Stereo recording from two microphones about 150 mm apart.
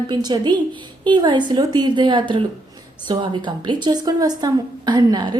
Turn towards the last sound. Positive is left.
turn(degrees=-30)  # may be behind; listen again after turning